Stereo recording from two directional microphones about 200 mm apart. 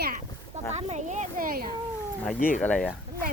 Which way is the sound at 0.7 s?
35° right (ahead or behind).